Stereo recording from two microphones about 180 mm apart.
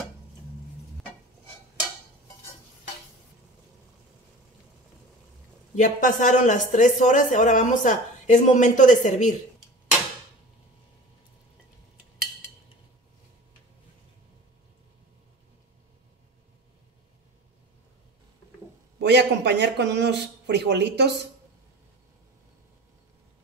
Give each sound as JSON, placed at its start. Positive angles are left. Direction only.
{"t": 5.8, "sound": "speech", "side_deg": 45}
{"t": 18.9, "sound": "a man's voice", "side_deg": -70}